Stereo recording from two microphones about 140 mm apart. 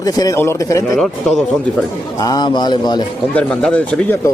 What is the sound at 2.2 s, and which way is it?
Speech, 30° left (ahead or behind).